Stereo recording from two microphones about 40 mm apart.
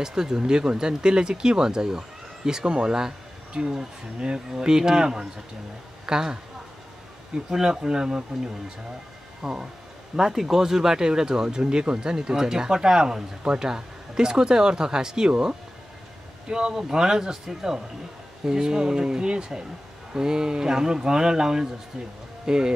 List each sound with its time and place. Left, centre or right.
0.0 s speech: centre
7.4 s speech: centre
9.4 s speech: centre